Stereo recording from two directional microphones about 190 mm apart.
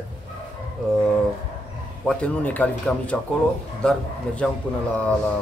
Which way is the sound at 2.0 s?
5° left (ahead or behind).